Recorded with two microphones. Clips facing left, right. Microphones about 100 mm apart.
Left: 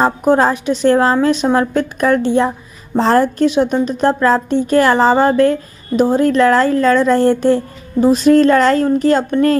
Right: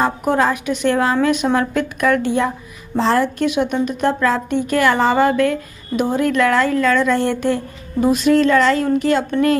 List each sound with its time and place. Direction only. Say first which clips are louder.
0.0 s a woman's voice: left 4 dB; 30° left (ahead or behind)